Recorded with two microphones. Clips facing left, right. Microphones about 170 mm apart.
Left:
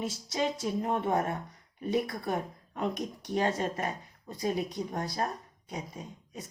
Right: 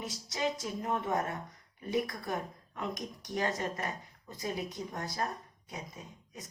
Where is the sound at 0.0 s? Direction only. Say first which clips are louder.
Left 3 dB; 30° left (ahead or behind).